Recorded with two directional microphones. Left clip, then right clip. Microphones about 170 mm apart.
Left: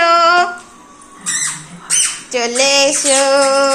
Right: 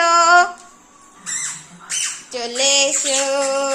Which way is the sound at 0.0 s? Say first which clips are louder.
Left 2 dB; 30° right (ahead or behind).